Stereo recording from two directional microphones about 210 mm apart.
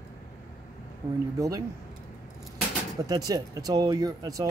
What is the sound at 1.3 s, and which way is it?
Speech, 15° right (ahead or behind).